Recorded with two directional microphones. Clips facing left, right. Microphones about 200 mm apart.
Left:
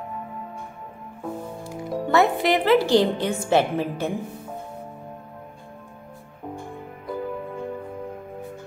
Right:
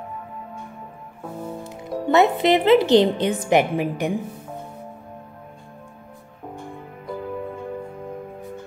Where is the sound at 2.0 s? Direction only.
20° right (ahead or behind).